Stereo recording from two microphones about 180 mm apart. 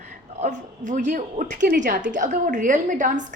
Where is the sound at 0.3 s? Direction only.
40° right (ahead or behind).